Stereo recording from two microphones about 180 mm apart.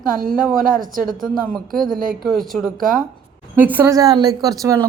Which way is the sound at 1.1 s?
Centre (ahead or behind).